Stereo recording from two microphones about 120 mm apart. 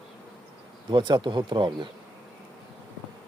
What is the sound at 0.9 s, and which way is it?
Speech, 40° right (ahead or behind).